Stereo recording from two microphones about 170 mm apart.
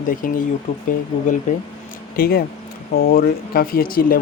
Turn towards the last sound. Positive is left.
turn(degrees=55)  # may be behind; listen again after turning